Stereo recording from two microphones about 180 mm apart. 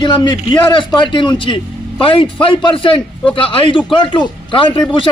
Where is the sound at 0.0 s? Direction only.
25° left (ahead or behind).